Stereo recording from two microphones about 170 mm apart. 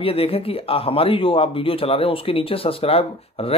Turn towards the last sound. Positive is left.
turn(degrees=35)  # may be behind; listen again after turning